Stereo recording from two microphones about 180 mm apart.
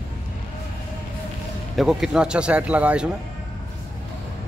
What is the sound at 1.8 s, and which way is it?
A man's voice, centre (ahead or behind).